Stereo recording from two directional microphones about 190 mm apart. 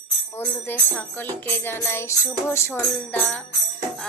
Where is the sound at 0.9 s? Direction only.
10° left (ahead or behind).